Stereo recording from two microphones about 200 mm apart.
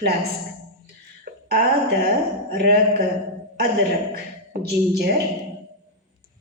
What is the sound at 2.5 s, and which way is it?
Speech, 50° right (ahead or behind).